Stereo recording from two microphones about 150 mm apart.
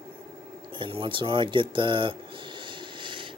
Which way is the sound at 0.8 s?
35° right (ahead or behind).